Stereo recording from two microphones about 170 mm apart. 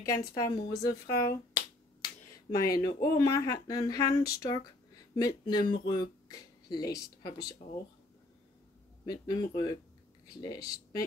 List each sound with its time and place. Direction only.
0.0 s speech: 20° left (ahead or behind)
9.0 s speech: 20° left (ahead or behind)